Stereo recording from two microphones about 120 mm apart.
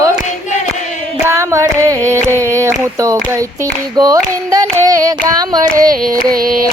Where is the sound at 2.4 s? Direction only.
25° right (ahead or behind).